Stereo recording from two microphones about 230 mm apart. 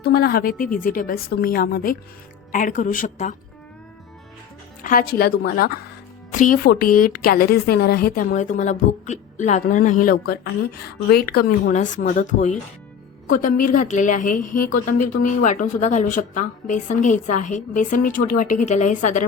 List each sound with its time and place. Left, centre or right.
0.0 s a woman's voice: left
4.8 s a woman's voice: left